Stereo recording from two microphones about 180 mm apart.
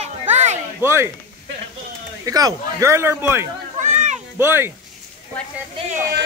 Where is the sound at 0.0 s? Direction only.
40° right (ahead or behind).